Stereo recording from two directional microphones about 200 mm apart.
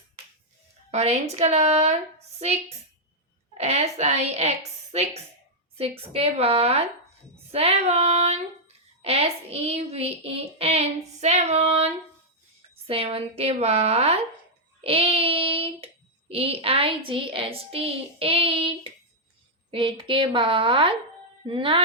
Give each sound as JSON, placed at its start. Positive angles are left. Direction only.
{"t": 0.9, "sound": "child singing", "side_deg": -35}